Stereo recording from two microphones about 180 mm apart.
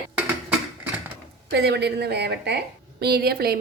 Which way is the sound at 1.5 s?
65° right (ahead or behind).